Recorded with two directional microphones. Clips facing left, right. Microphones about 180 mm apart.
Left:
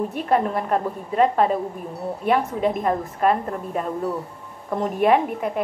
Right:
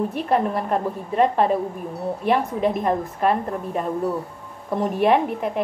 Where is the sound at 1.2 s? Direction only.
Centre (ahead or behind).